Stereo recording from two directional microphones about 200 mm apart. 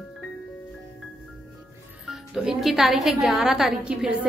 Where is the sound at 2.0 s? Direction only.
Centre (ahead or behind).